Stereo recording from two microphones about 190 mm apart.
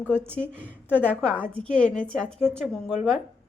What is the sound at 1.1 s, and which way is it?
A woman's voice, 5° left (ahead or behind).